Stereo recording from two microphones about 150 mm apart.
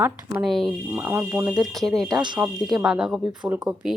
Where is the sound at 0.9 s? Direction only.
15° right (ahead or behind).